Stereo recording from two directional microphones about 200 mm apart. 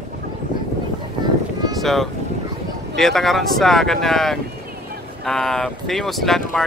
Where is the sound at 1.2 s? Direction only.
20° right (ahead or behind).